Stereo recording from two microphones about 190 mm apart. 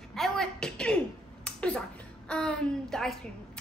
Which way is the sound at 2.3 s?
5° left (ahead or behind).